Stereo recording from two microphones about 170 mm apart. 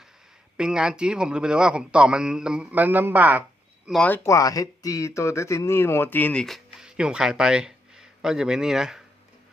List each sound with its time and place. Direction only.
0.5 s a man's voice: 5° right (ahead or behind)
3.8 s a man's voice: 5° left (ahead or behind)
4.3 s speech: 20° left (ahead or behind); by 9.0 s 5° right (ahead or behind)